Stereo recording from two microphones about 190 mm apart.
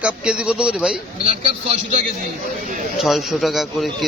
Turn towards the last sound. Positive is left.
turn(degrees=0)  # may be behind; listen again after turning